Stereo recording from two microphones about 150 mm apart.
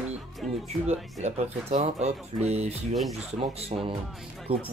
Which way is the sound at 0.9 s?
50° right (ahead or behind).